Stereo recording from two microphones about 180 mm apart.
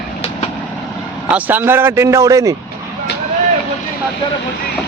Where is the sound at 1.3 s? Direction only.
10° right (ahead or behind).